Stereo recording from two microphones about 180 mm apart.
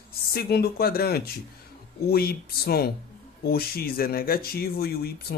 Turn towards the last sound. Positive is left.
turn(degrees=60)  # may be behind; listen again after turning